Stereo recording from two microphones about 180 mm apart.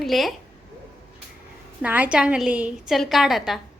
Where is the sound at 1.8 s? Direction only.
10° right (ahead or behind).